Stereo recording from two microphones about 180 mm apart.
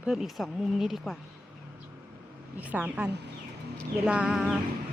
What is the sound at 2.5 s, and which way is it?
Speech, 10° right (ahead or behind).